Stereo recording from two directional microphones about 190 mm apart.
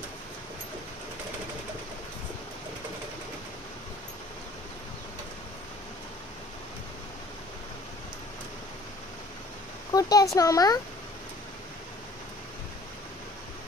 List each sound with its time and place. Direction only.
9.9 s speech: 20° left (ahead or behind)